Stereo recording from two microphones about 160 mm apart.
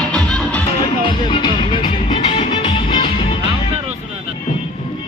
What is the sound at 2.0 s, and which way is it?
Music, 45° left (ahead or behind).